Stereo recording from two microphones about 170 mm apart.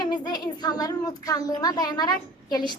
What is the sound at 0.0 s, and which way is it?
A child's voice, 25° left (ahead or behind).